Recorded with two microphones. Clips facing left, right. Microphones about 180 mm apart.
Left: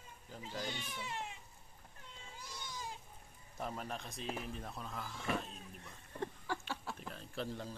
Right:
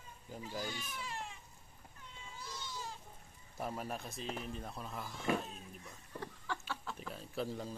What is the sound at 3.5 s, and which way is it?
Speech, 5° right (ahead or behind).